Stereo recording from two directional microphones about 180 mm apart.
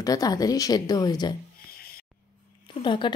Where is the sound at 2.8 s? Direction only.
25° left (ahead or behind).